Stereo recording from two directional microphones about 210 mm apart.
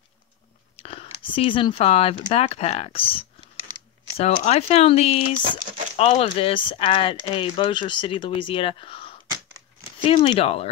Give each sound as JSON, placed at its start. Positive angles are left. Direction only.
{"t": 0.7, "sound": "speech", "side_deg": 25}